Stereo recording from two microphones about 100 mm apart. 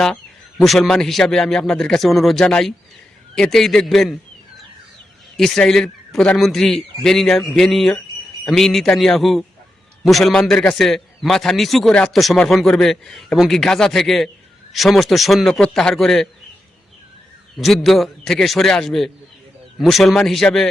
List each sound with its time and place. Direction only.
0.6 s a man's voice: 5° left (ahead or behind)
5.4 s a man's voice: 5° left (ahead or behind)
17.6 s a man's voice: centre (ahead or behind)